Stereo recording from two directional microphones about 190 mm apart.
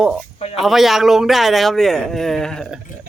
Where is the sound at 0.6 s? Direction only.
Centre (ahead or behind).